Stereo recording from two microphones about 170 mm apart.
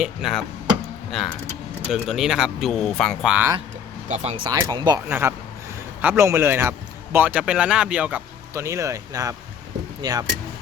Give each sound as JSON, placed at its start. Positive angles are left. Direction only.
{"t": 0.0, "sound": "speech", "side_deg": 0}
{"t": 1.9, "sound": "speech", "side_deg": -5}
{"t": 4.1, "sound": "speech", "side_deg": -40}
{"t": 4.5, "sound": "speech", "side_deg": -20}
{"t": 5.0, "sound": "a man's voice", "side_deg": -10}
{"t": 8.5, "sound": "a man's voice", "side_deg": -15}